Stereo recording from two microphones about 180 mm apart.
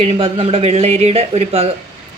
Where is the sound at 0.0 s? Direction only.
35° right (ahead or behind).